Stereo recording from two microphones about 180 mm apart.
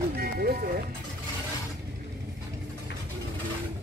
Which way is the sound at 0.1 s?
60° right (ahead or behind).